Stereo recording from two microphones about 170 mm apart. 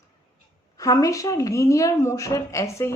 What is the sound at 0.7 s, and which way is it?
Speech, 20° left (ahead or behind).